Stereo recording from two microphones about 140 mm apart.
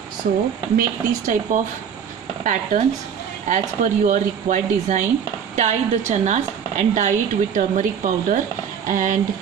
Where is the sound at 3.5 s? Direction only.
65° right (ahead or behind).